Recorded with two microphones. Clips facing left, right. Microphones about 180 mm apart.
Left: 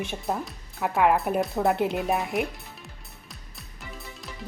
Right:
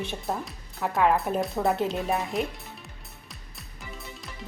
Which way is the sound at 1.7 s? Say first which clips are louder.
Left 2 dB; 15° left (ahead or behind).